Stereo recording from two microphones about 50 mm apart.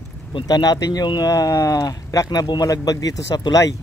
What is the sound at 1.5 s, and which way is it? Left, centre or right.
Speech, left.